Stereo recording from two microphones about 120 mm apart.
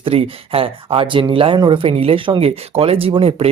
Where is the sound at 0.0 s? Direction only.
50° right (ahead or behind).